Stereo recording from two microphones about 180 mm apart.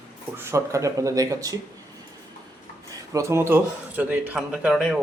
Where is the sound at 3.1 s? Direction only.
15° right (ahead or behind).